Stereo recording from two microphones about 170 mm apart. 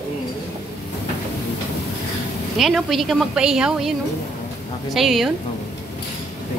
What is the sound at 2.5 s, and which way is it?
A woman's voice, centre (ahead or behind).